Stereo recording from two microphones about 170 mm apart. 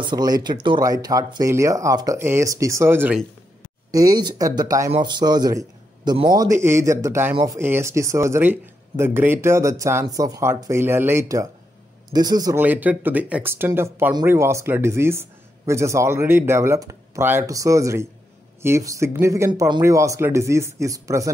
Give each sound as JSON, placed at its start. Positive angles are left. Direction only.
{"t": 0.0, "sound": "a man's voice", "side_deg": -25}
{"t": 12.5, "sound": "speech", "side_deg": -10}